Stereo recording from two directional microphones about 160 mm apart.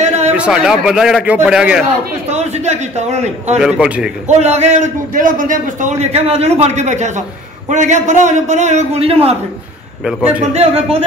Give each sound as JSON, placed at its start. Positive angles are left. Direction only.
{"t": 0.0, "sound": "a sound", "side_deg": -45}
{"t": 0.3, "sound": "a man's voice", "side_deg": -5}
{"t": 2.2, "sound": "a man's voice", "side_deg": -45}
{"t": 3.5, "sound": "a man's voice", "side_deg": -5}
{"t": 4.3, "sound": "a man's voice", "side_deg": -45}
{"t": 10.5, "sound": "speech", "side_deg": -40}